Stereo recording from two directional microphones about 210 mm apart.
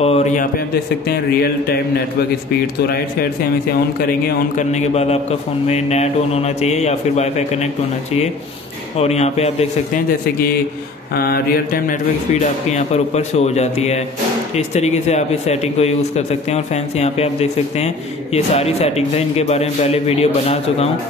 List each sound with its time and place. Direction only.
0.0 s a man's voice: 30° left (ahead or behind)
1.0 s speech: 45° left (ahead or behind)
4.3 s a man's voice: 35° left (ahead or behind)
8.9 s a man's voice: 30° left (ahead or behind)
11.1 s a man's voice: 45° left (ahead or behind); by 20.2 s 30° left (ahead or behind)